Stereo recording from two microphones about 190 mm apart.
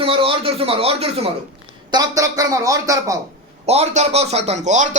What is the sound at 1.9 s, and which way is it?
A man's voice, 20° right (ahead or behind).